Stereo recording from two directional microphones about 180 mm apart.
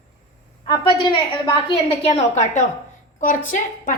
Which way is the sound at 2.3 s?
40° left (ahead or behind).